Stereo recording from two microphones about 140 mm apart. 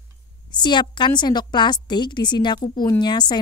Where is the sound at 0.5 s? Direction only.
30° left (ahead or behind).